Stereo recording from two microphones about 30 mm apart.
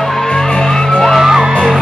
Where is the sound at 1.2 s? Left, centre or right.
Centre.